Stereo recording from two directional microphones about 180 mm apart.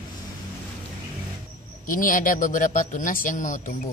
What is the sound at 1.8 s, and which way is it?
A man's voice, 50° left (ahead or behind).